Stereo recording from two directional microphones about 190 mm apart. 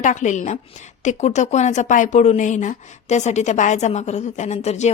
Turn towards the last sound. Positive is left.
turn(degrees=35)  # may be behind; listen again after turning